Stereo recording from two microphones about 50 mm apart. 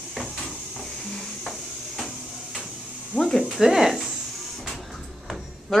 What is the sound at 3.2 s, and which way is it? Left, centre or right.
Speech, centre.